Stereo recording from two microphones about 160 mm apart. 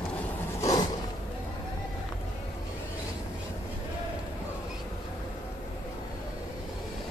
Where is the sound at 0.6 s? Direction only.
20° left (ahead or behind).